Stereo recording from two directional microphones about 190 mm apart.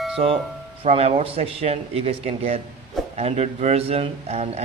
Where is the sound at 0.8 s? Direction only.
30° right (ahead or behind).